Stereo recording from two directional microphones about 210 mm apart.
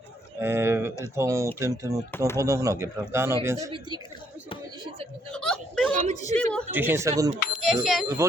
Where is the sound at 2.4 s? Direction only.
15° right (ahead or behind).